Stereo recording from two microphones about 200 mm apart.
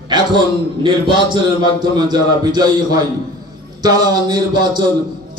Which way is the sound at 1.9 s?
20° right (ahead or behind).